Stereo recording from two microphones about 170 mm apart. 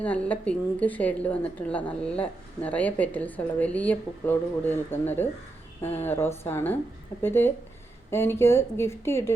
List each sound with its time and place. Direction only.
0.0 s a woman's voice: 10° left (ahead or behind)